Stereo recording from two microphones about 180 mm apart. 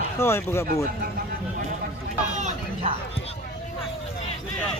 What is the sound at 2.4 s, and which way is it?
Speech, 40° right (ahead or behind).